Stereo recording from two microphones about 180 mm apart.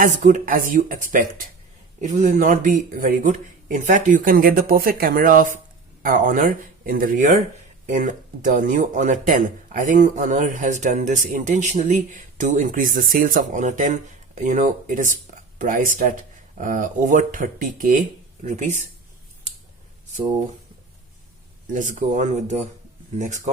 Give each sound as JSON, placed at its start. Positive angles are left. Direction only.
{"t": 0.0, "sound": "speech", "side_deg": -45}
{"t": 21.7, "sound": "speech", "side_deg": -45}